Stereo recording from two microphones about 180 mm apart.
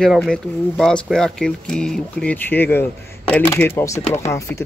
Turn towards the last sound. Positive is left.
turn(degrees=15)  # may be behind; listen again after turning